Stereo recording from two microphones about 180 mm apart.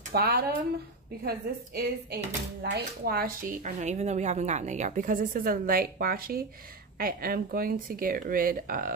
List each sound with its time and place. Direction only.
0.1 s speech: 60° right (ahead or behind)